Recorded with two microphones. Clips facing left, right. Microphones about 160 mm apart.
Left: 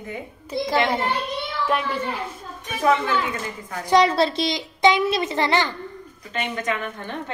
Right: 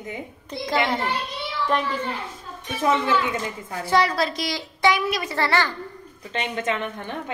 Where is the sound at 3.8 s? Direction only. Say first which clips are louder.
Left 4 dB; 20° left (ahead or behind).